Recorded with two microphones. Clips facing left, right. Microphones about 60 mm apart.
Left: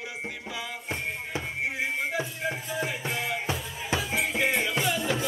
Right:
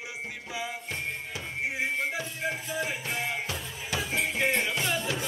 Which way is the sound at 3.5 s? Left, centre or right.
Left.